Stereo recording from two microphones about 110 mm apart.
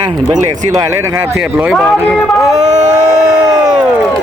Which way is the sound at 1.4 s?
5° right (ahead or behind).